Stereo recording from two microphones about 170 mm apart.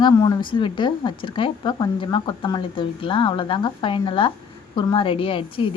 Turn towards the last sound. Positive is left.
turn(degrees=30)  # may be behind; listen again after turning